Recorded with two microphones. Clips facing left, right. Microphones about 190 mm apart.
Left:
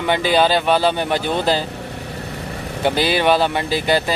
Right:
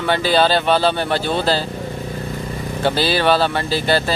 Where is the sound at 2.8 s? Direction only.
15° left (ahead or behind).